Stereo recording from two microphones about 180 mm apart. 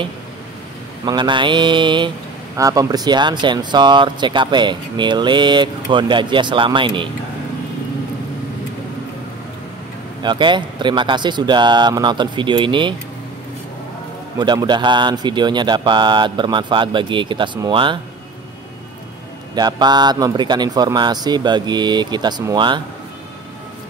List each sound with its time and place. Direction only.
1.0 s speech: 25° right (ahead or behind)
10.2 s speech: 25° right (ahead or behind)
14.4 s speech: 25° right (ahead or behind)
19.5 s speech: 25° right (ahead or behind)